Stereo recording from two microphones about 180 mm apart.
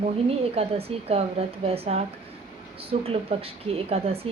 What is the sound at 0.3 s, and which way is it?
Speech, 35° right (ahead or behind).